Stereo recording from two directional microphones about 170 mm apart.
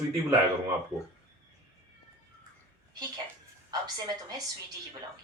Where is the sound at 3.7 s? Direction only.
25° right (ahead or behind).